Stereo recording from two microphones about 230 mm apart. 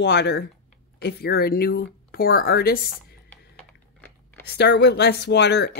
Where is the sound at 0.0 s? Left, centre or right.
Left.